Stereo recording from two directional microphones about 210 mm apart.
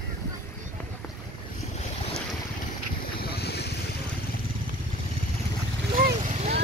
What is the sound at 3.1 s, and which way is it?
Boat, 50° left (ahead or behind).